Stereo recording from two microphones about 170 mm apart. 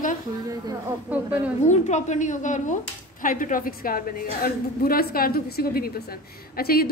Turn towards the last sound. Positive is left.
turn(degrees=60)  # may be behind; listen again after turning